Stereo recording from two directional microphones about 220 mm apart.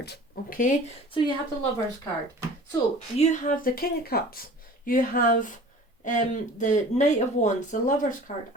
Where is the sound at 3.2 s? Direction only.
35° left (ahead or behind).